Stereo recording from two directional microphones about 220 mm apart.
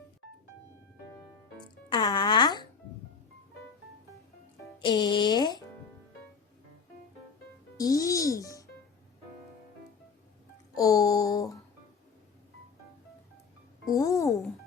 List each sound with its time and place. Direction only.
1.9 s music: 20° left (ahead or behind)
4.8 s speech: 20° left (ahead or behind)
7.8 s music: 15° left (ahead or behind)
10.8 s a sound: 15° left (ahead or behind)
13.9 s music: 15° left (ahead or behind)